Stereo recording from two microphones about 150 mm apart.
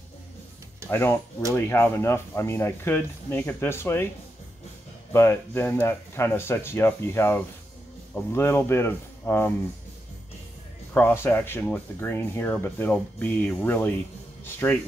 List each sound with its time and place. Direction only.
0.8 s speech: 15° left (ahead or behind)
5.1 s speech: 15° left (ahead or behind)
10.9 s a man's voice: 10° left (ahead or behind)